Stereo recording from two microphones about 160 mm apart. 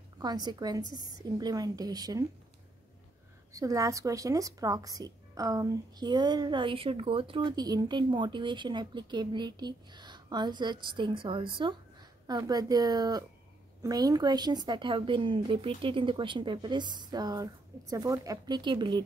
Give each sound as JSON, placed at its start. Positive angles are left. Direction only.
{"t": 0.2, "sound": "speech", "side_deg": -25}
{"t": 3.5, "sound": "speech", "side_deg": -20}